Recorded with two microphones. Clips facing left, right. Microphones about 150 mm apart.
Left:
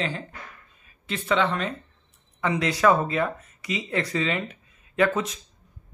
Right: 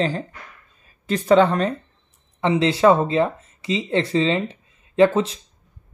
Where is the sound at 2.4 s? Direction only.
25° right (ahead or behind).